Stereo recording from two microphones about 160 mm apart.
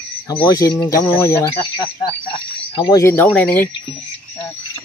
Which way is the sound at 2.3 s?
35° left (ahead or behind).